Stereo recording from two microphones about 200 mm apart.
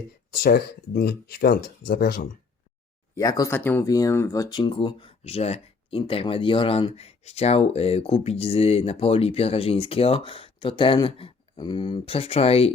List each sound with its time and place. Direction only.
0.3 s speech: 50° left (ahead or behind)
3.2 s speech: 15° left (ahead or behind)